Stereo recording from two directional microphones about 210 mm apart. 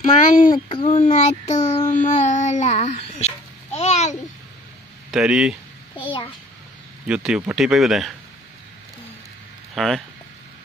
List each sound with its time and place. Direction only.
0.3 s a child's voice: 40° left (ahead or behind)
0.7 s child singing: 30° left (ahead or behind)
5.1 s speech: 5° right (ahead or behind)
5.9 s a sound: 25° left (ahead or behind)
7.1 s speech: 5° right (ahead or behind)
9.8 s speech: centre (ahead or behind)